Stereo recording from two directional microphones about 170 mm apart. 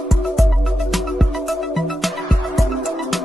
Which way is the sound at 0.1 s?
Centre (ahead or behind).